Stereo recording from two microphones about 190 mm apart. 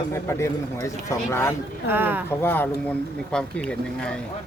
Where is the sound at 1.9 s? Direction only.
10° right (ahead or behind).